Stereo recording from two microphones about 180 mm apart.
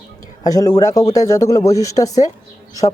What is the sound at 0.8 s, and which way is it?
Speech, 20° left (ahead or behind).